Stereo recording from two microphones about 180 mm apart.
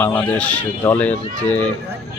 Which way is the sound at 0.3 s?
5° left (ahead or behind).